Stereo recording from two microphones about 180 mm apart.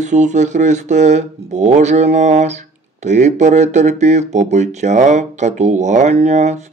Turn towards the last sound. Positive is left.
turn(degrees=-40)  # may be behind; listen again after turning